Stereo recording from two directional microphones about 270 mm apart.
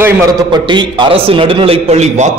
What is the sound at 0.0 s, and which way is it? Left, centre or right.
A man's voice, centre.